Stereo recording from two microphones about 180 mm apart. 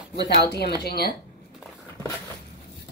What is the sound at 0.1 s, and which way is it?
Speech, 65° left (ahead or behind).